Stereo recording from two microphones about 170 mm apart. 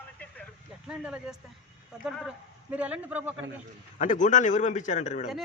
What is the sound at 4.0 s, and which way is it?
A man's voice, 45° left (ahead or behind).